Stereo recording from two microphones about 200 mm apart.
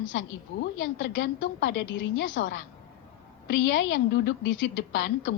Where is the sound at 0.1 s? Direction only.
70° left (ahead or behind).